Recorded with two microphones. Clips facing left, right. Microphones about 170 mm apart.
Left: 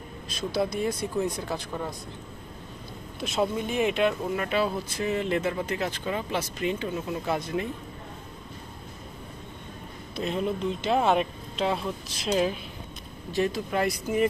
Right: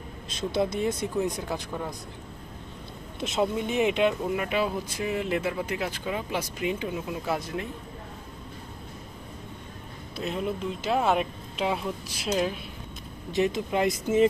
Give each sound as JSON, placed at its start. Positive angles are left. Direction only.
{"t": 0.3, "sound": "speech", "side_deg": -25}
{"t": 3.2, "sound": "speech", "side_deg": -20}
{"t": 10.1, "sound": "speech", "side_deg": -5}
{"t": 13.3, "sound": "speech", "side_deg": -20}